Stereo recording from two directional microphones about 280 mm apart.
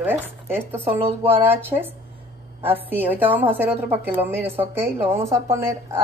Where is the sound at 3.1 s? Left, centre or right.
Centre.